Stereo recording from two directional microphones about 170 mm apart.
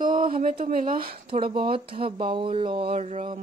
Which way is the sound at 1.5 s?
30° right (ahead or behind).